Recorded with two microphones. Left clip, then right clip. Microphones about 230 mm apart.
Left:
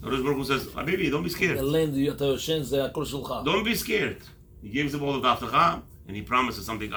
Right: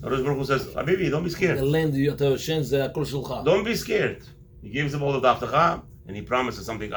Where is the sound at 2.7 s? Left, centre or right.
Right.